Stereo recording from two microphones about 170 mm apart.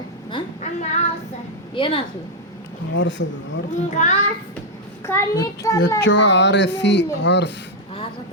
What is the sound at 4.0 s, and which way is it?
Speech, 45° left (ahead or behind).